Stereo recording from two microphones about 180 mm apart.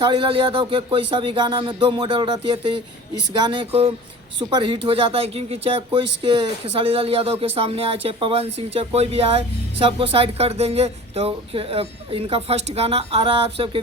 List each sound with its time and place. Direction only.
0.0 s speech: 25° right (ahead or behind)